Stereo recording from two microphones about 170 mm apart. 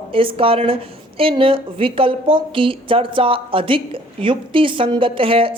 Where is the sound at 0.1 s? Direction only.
30° right (ahead or behind).